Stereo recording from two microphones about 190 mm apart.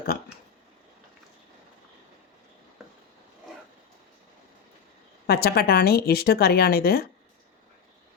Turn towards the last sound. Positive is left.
turn(degrees=55)  # may be behind; listen again after turning